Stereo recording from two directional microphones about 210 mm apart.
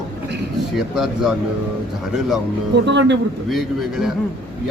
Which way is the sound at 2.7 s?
55° right (ahead or behind).